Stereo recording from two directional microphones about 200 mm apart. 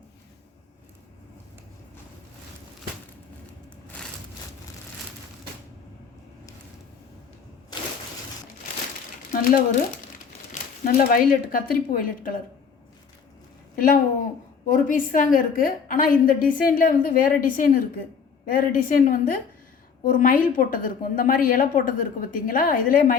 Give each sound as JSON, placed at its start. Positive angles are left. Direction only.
{"t": 9.3, "sound": "crumpling", "side_deg": 45}
{"t": 10.8, "sound": "a woman's voice", "side_deg": 45}
{"t": 13.7, "sound": "a woman's voice", "side_deg": 45}